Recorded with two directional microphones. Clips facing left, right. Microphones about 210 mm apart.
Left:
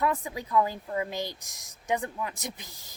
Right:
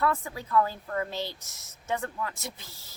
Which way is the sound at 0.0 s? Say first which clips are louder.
Even; 15° left (ahead or behind).